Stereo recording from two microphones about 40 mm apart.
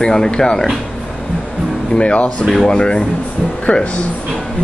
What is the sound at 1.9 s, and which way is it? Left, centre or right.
Speech, left.